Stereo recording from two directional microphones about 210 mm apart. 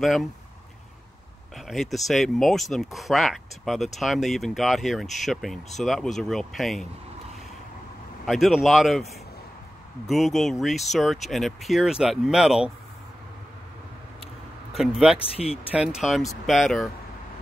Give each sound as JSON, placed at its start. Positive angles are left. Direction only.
{"t": 0.0, "sound": "speech", "side_deg": 0}
{"t": 1.7, "sound": "speech", "side_deg": 0}
{"t": 8.3, "sound": "speech", "side_deg": 0}
{"t": 10.0, "sound": "speech", "side_deg": 0}
{"t": 14.7, "sound": "speech", "side_deg": 0}
{"t": 15.1, "sound": "speech", "side_deg": 30}
{"t": 15.7, "sound": "speech", "side_deg": -5}